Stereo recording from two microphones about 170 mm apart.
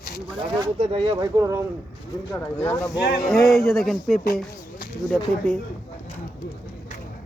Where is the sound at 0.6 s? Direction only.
30° right (ahead or behind).